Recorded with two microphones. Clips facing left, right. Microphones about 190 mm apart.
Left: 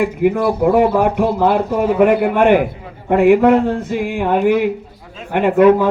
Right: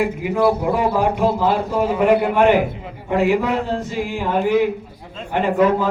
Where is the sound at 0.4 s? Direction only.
55° left (ahead or behind).